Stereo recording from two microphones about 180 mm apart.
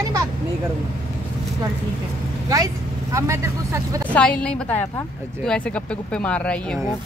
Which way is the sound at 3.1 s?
15° right (ahead or behind).